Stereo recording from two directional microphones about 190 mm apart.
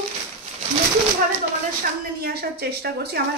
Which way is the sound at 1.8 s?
55° right (ahead or behind).